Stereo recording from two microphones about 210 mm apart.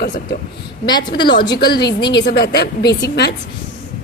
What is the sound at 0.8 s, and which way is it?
A woman's voice, 20° left (ahead or behind).